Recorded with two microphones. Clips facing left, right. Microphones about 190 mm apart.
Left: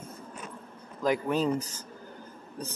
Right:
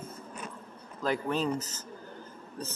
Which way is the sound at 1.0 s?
10° left (ahead or behind).